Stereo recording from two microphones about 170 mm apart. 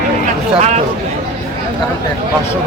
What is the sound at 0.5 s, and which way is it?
Speech, 40° right (ahead or behind).